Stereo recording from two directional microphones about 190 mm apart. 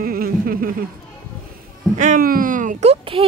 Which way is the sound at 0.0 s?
50° right (ahead or behind).